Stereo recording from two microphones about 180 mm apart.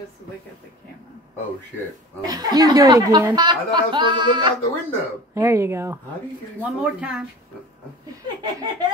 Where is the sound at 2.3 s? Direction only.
20° right (ahead or behind); by 7.2 s 5° right (ahead or behind).